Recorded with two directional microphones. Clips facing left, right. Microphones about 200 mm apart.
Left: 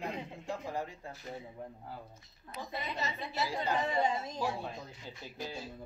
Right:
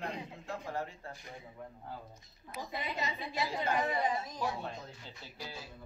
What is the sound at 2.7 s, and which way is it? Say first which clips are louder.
A woman's voice: even; 15° right (ahead or behind).